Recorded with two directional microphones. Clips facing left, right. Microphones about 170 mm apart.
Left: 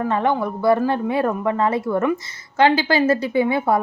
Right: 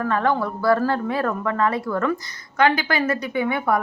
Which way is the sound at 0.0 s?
20° left (ahead or behind).